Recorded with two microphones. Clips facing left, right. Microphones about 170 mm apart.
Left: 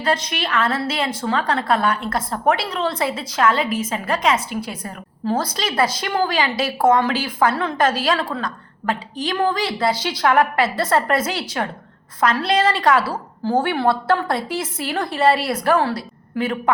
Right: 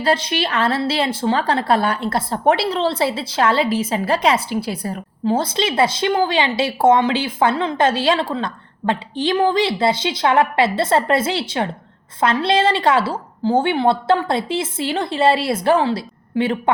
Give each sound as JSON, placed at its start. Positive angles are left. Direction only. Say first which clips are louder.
{"t": 0.0, "sound": "a woman's voice", "louder": "right 3 dB", "side_deg": -30}